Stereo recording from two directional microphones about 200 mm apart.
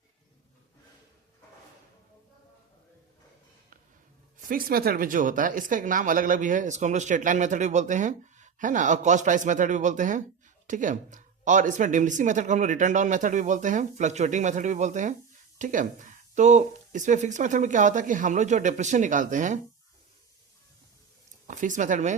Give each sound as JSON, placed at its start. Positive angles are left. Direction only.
{"t": 4.4, "sound": "speech", "side_deg": -45}
{"t": 21.4, "sound": "speech", "side_deg": -40}